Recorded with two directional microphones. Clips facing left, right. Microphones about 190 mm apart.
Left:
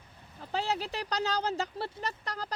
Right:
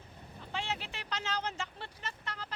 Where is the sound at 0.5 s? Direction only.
40° left (ahead or behind).